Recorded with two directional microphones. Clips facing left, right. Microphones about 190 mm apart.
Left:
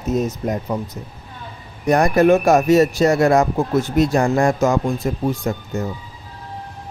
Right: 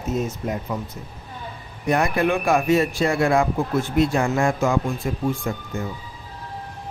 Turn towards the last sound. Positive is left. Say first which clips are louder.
# left 4 dB
turn(degrees=40)  # may be behind; listen again after turning